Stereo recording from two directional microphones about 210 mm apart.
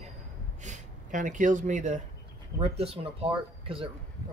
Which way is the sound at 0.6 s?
35° right (ahead or behind).